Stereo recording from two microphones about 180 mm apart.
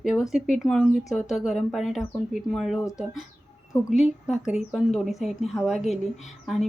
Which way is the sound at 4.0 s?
5° right (ahead or behind).